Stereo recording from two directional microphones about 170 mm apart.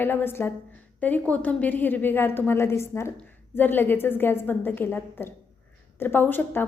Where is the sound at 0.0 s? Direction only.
10° left (ahead or behind).